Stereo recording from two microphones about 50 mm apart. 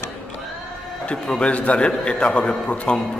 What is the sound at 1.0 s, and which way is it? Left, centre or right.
A man's voice, centre.